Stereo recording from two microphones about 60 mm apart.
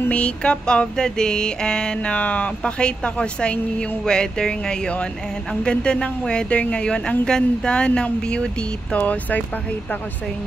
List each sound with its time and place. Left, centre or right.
0.1 s a woman's voice: centre